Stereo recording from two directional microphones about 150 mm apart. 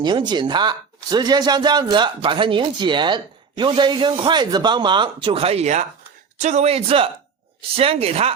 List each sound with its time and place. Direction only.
0.0 s a man's voice: 30° right (ahead or behind)